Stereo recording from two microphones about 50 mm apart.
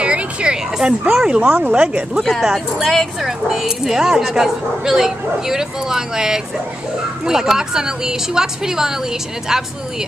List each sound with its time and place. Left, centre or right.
0.0 s a sound: right
1.1 s speech: centre
1.4 s speech: right
2.4 s speech: centre